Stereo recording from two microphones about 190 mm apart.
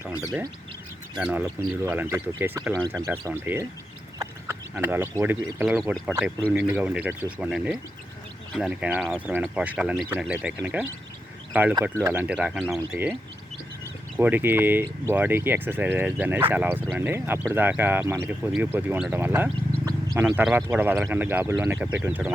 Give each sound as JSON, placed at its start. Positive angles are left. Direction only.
{"t": 1.1, "sound": "speech", "side_deg": -10}
{"t": 4.7, "sound": "speech", "side_deg": -10}
{"t": 14.2, "sound": "speech", "side_deg": -10}
{"t": 19.9, "sound": "a sound", "side_deg": -20}
{"t": 20.2, "sound": "speech", "side_deg": -5}